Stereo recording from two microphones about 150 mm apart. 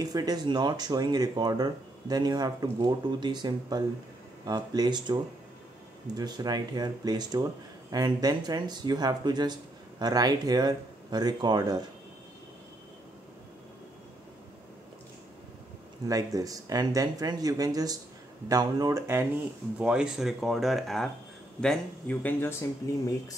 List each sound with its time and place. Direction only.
0.0 s speech: 25° right (ahead or behind)
16.1 s speech: 25° right (ahead or behind)
19.8 s speech: 5° right (ahead or behind); by 22.7 s 15° left (ahead or behind)